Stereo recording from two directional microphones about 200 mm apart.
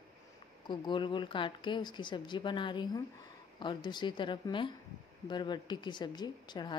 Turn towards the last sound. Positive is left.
turn(degrees=20)  # may be behind; listen again after turning